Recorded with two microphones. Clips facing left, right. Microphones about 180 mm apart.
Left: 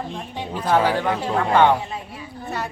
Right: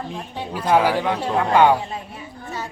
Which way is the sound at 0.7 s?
10° right (ahead or behind).